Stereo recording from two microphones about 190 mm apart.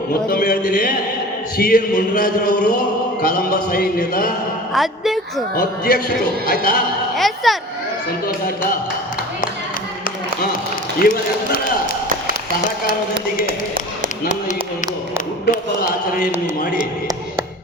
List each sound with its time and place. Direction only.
0.3 s music: 50° left (ahead or behind)
4.7 s speech: centre (ahead or behind)
5.5 s music: 50° left (ahead or behind)
7.2 s a sound: centre (ahead or behind)
11.0 s music: 50° left (ahead or behind)